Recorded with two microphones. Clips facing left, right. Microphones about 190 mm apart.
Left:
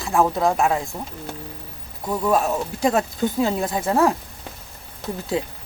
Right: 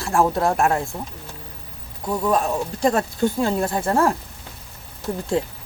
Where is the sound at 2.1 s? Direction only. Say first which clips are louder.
Even; 5° left (ahead or behind).